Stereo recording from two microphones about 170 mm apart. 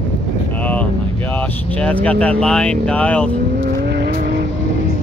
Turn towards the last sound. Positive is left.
turn(degrees=-65)  # may be behind; listen again after turning